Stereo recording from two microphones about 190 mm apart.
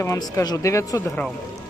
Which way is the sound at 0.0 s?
15° left (ahead or behind).